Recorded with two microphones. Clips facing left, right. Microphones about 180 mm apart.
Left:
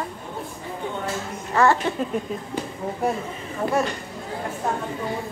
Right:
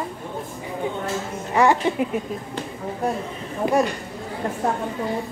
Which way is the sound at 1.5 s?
15° right (ahead or behind).